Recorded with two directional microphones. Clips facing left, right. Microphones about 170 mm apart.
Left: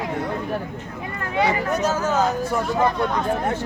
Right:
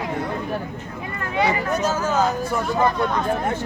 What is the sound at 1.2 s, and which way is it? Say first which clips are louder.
Speech: even; 35° left (ahead or behind).